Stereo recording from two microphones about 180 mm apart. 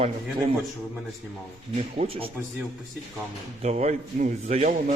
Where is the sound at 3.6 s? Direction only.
35° right (ahead or behind).